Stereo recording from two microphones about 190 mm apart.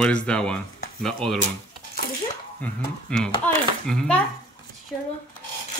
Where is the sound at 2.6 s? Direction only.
10° left (ahead or behind).